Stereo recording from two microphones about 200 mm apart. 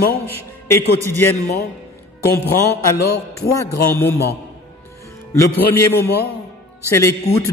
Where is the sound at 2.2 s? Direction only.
50° left (ahead or behind).